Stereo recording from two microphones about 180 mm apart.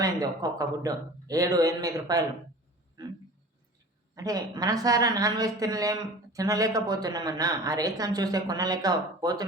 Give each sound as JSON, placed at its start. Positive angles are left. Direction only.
{"t": 0.0, "sound": "a woman's voice", "side_deg": -20}
{"t": 3.0, "sound": "a sound", "side_deg": -20}
{"t": 4.1, "sound": "a woman's voice", "side_deg": -20}